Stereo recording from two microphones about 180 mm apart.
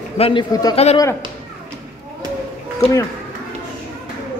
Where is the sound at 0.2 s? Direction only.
25° left (ahead or behind).